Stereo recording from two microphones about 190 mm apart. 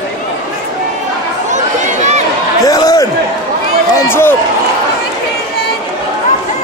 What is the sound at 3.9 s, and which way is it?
Run, 10° left (ahead or behind).